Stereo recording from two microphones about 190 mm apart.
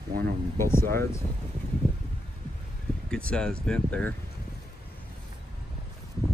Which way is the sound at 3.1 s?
5° left (ahead or behind).